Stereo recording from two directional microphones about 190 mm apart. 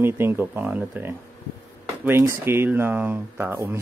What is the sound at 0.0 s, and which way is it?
Speech, 10° right (ahead or behind).